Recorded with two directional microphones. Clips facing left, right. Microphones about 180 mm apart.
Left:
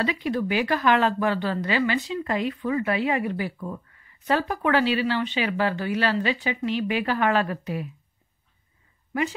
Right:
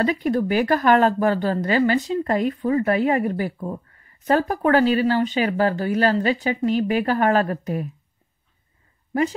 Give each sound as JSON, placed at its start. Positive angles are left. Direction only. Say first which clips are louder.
{"t": 0.0, "sound": "speech", "louder": "right 5 dB", "side_deg": -45}